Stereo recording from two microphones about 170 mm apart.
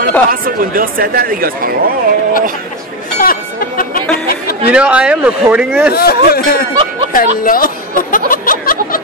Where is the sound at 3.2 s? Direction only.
55° left (ahead or behind).